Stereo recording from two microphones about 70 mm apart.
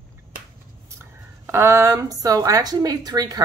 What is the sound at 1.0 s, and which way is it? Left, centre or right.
A woman's voice, right.